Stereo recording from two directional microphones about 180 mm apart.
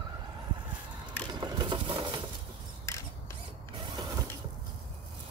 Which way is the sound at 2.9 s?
15° left (ahead or behind).